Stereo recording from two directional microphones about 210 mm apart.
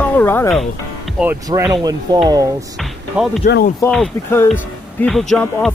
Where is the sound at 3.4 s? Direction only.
50° left (ahead or behind).